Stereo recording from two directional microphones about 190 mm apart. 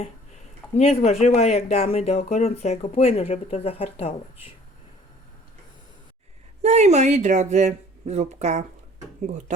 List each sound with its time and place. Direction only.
0.8 s speech: 35° left (ahead or behind)
6.6 s speech: 35° right (ahead or behind)